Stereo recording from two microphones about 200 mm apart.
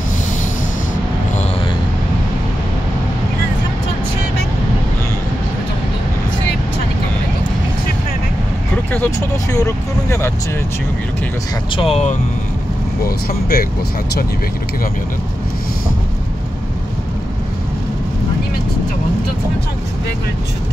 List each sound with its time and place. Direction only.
8.9 s speech: 10° left (ahead or behind)
11.7 s speech: 30° left (ahead or behind)
13.0 s speech: 50° left (ahead or behind)